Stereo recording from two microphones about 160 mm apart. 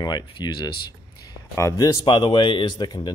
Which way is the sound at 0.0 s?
30° left (ahead or behind).